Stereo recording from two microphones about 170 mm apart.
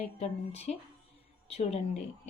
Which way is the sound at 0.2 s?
40° left (ahead or behind).